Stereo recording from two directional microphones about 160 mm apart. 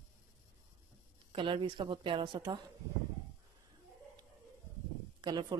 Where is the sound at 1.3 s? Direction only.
30° right (ahead or behind).